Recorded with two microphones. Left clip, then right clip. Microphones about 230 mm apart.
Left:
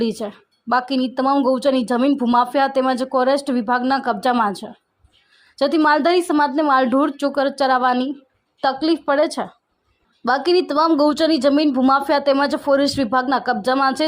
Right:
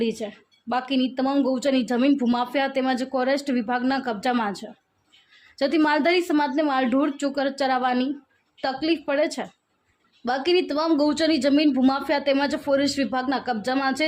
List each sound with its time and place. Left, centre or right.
0.0 s a woman's voice: left